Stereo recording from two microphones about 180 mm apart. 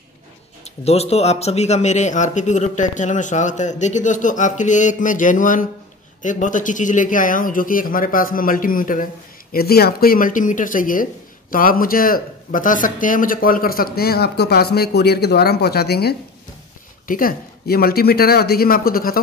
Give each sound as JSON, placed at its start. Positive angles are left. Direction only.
{"t": 0.8, "sound": "a man's voice", "side_deg": 35}
{"t": 17.1, "sound": "a man's voice", "side_deg": 50}